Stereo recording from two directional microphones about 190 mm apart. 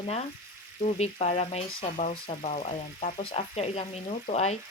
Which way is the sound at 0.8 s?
35° left (ahead or behind).